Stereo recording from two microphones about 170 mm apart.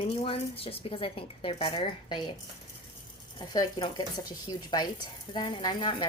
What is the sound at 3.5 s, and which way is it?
A woman's voice, 25° left (ahead or behind).